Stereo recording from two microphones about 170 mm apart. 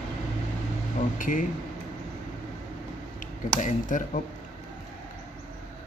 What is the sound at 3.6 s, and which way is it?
Speech, 50° left (ahead or behind).